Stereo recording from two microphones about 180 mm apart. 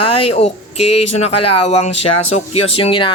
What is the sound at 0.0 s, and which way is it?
Speech, 35° left (ahead or behind).